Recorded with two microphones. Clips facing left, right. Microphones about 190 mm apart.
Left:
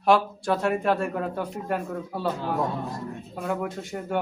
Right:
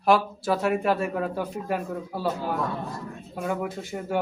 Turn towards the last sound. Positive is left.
turn(degrees=0)  # may be behind; listen again after turning